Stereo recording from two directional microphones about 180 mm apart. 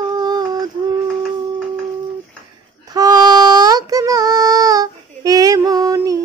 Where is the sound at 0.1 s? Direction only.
20° right (ahead or behind).